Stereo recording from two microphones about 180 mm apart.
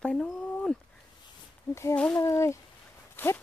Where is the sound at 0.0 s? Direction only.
5° left (ahead or behind).